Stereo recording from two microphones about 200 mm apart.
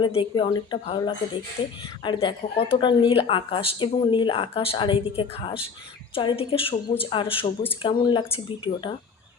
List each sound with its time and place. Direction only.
0.0 s speech: 25° left (ahead or behind)